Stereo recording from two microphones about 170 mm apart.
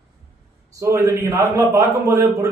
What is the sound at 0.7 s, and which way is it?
A man's voice, 20° right (ahead or behind).